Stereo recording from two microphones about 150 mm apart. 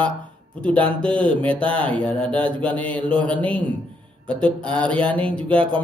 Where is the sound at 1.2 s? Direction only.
10° left (ahead or behind).